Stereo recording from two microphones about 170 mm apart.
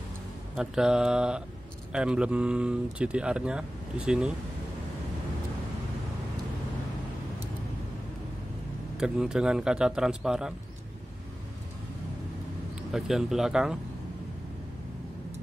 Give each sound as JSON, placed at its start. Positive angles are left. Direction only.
{"t": 0.6, "sound": "speech", "side_deg": -5}
{"t": 8.9, "sound": "speech", "side_deg": -5}
{"t": 12.9, "sound": "speech", "side_deg": 0}